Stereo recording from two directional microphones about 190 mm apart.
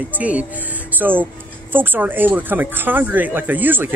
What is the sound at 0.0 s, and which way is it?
Speech, 10° right (ahead or behind).